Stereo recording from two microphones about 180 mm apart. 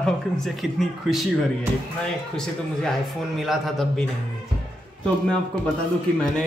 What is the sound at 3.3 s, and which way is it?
Speech, centre (ahead or behind).